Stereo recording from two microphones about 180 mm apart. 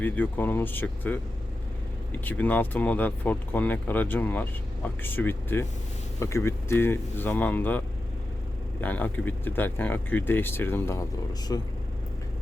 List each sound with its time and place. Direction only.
0.0 s speech: 10° left (ahead or behind)
2.2 s speech: 10° left (ahead or behind)
8.8 s speech: 10° left (ahead or behind)